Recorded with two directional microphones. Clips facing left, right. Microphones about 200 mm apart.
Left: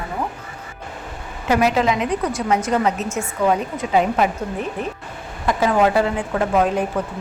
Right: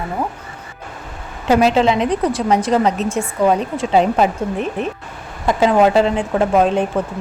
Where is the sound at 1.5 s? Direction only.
25° right (ahead or behind).